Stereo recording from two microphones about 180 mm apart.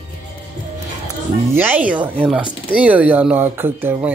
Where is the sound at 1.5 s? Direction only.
10° right (ahead or behind).